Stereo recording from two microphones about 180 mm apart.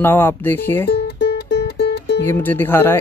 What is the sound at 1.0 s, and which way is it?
Music, 65° left (ahead or behind).